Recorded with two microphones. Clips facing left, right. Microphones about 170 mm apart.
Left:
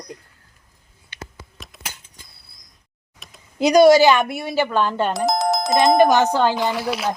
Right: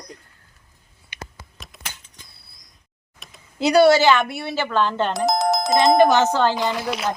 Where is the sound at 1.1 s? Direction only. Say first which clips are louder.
Even; 15° right (ahead or behind).